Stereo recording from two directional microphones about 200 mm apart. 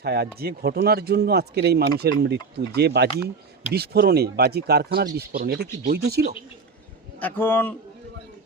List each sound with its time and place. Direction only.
0.0 s speech: 50° right (ahead or behind)
7.2 s a man's voice: 10° left (ahead or behind)